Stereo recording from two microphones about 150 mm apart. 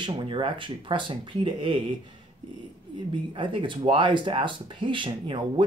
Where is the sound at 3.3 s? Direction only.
35° right (ahead or behind).